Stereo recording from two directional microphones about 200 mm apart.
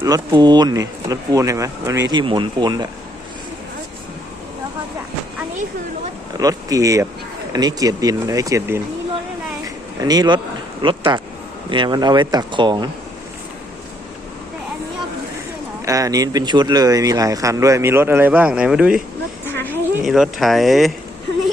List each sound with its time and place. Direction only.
0.0 s speech: 20° right (ahead or behind)
6.3 s speech: 20° right (ahead or behind)
9.6 s a sound: 20° right (ahead or behind)
10.8 s speech: 20° right (ahead or behind)
15.9 s speech: 15° right (ahead or behind)
19.5 s a sound: 10° left (ahead or behind)
20.1 s speech: centre (ahead or behind)